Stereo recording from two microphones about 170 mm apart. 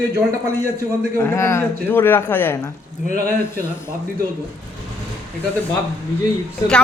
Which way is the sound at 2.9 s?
45° left (ahead or behind).